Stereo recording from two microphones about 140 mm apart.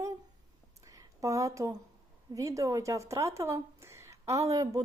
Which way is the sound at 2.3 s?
25° right (ahead or behind).